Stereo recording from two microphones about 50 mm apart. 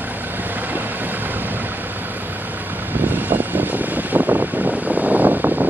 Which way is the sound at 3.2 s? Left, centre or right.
Right.